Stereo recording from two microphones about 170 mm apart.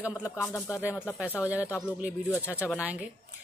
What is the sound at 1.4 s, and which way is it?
Speech, 10° right (ahead or behind).